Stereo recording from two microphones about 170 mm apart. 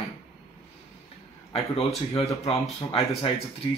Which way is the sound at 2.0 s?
35° left (ahead or behind).